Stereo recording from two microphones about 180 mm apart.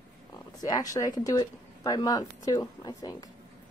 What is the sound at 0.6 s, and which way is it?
Speech, 20° left (ahead or behind).